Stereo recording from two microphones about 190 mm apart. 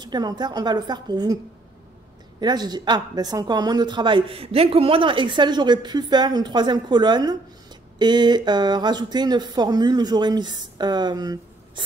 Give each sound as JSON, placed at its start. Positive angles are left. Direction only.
{"t": 0.0, "sound": "speech", "side_deg": -20}
{"t": 2.4, "sound": "speech", "side_deg": -20}